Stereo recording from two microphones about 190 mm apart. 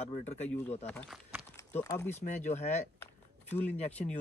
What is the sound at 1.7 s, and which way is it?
Speech, 10° left (ahead or behind).